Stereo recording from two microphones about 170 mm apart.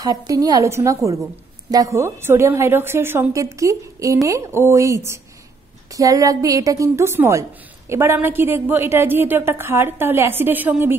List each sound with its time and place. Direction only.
0.0 s a woman's voice: 20° right (ahead or behind)